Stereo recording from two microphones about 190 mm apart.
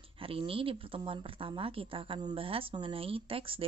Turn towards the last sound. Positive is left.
turn(degrees=-30)  # may be behind; listen again after turning